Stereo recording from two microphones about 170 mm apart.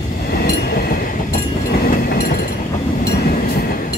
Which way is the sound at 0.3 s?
65° left (ahead or behind).